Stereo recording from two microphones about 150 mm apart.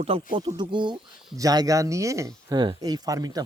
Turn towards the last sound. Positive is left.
turn(degrees=-25)  # may be behind; listen again after turning